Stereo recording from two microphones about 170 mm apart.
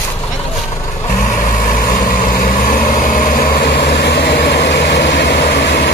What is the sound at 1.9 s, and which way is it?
Vehicle, 55° left (ahead or behind).